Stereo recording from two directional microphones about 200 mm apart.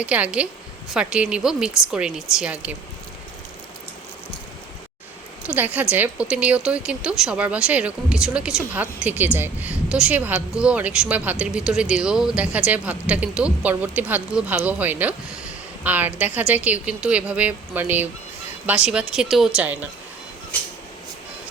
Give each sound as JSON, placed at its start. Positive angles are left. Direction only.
{"t": 0.0, "sound": "a woman's voice", "side_deg": -5}
{"t": 5.4, "sound": "a woman's voice", "side_deg": -10}